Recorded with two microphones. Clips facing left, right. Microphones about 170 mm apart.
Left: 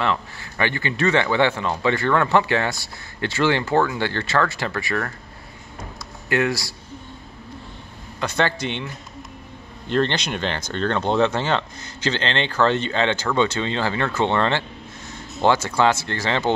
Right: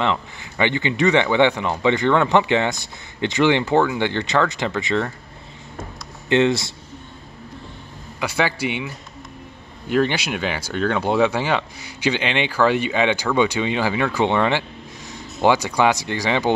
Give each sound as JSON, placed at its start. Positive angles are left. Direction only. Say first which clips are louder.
{"t": 0.0, "sound": "speech", "louder": "right 1 dB", "side_deg": -20}
{"t": 6.2, "sound": "speech", "louder": "right 5 dB", "side_deg": -25}
{"t": 8.2, "sound": "speech", "louder": "right 1 dB", "side_deg": -10}